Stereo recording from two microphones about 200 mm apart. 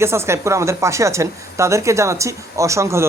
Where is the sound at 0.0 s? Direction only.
15° right (ahead or behind).